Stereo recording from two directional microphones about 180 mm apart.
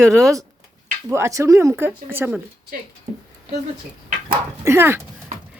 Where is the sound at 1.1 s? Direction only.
15° right (ahead or behind).